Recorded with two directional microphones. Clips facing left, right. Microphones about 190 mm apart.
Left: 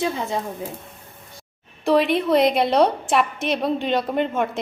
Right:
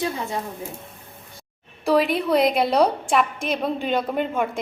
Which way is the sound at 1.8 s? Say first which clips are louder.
Left 1 dB; centre (ahead or behind).